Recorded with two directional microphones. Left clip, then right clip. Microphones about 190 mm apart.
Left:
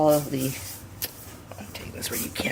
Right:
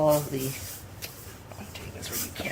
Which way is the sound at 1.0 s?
50° left (ahead or behind).